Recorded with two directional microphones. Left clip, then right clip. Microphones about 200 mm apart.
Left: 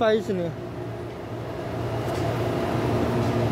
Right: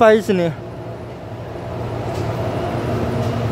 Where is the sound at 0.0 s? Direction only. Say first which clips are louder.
Right 10 dB; 15° right (ahead or behind).